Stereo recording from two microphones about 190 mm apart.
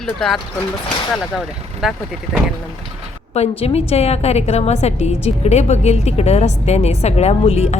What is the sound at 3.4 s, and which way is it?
A woman's voice, 30° left (ahead or behind).